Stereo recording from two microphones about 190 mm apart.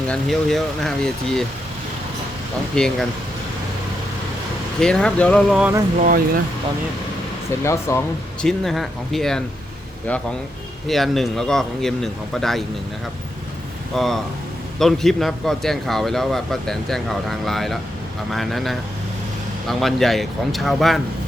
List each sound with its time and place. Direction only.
0.1 s speech: centre (ahead or behind)
2.7 s speech: 5° left (ahead or behind)
4.8 s speech: 5° left (ahead or behind)
6.0 s speech: 50° right (ahead or behind)
7.6 s speech: 15° left (ahead or behind)
13.9 s speech: centre (ahead or behind)